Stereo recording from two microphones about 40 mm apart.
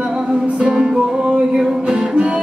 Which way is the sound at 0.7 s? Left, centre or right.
Centre.